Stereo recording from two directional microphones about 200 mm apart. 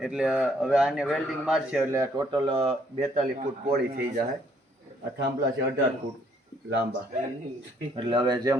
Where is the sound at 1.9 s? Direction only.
15° right (ahead or behind).